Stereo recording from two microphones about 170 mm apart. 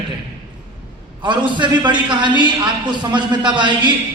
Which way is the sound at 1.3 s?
25° right (ahead or behind).